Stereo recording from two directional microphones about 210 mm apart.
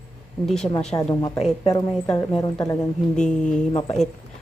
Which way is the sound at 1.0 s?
15° left (ahead or behind).